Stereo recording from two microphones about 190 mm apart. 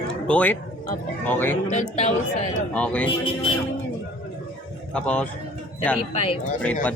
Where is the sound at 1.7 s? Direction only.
40° left (ahead or behind).